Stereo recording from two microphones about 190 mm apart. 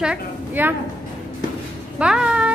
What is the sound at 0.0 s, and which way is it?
Speech, 5° right (ahead or behind).